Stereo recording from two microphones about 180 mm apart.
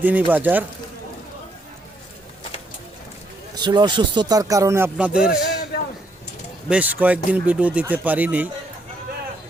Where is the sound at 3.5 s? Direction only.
25° right (ahead or behind); by 5.4 s 5° right (ahead or behind).